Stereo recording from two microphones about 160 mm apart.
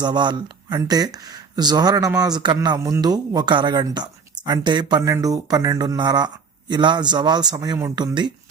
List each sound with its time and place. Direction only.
0.0 s speech: 30° right (ahead or behind)